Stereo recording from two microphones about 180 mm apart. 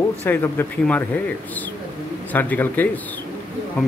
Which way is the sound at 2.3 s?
10° left (ahead or behind).